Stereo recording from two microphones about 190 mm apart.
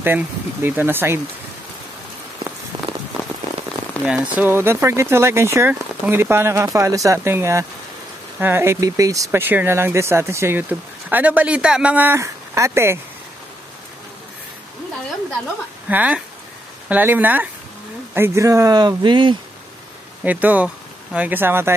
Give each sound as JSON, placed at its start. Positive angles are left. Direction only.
{"t": 0.0, "sound": "speech", "side_deg": -10}
{"t": 2.7, "sound": "a sound", "side_deg": -25}
{"t": 4.0, "sound": "speech", "side_deg": -10}
{"t": 15.9, "sound": "speech", "side_deg": -10}
{"t": 20.2, "sound": "speech", "side_deg": -10}